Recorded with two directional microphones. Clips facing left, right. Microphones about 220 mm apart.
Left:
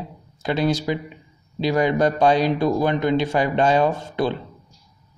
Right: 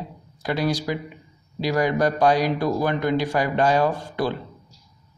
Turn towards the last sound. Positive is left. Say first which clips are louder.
# left 2 dB
turn(degrees=25)  # may be behind; listen again after turning